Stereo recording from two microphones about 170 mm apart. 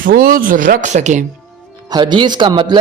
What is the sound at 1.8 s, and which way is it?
Speech, 25° right (ahead or behind).